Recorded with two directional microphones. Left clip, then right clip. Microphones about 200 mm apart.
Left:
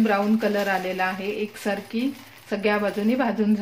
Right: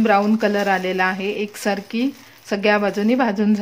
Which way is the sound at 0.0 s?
45° right (ahead or behind).